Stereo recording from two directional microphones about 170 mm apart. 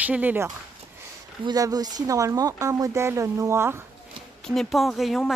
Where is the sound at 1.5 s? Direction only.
20° right (ahead or behind).